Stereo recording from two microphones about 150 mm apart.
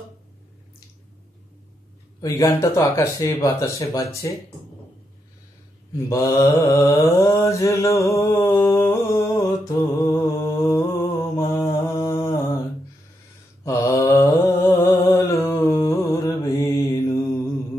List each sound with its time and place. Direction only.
2.2 s mantra: 20° left (ahead or behind)
5.9 s mantra: 20° left (ahead or behind)
13.7 s mantra: 20° left (ahead or behind)